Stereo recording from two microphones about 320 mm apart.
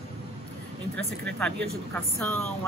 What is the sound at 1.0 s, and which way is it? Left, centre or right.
Speech, centre.